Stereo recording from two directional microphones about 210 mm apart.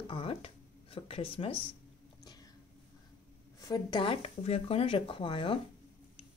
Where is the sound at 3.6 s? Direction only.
20° left (ahead or behind).